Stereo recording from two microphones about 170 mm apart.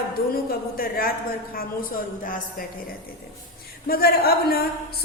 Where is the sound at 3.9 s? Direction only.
65° left (ahead or behind).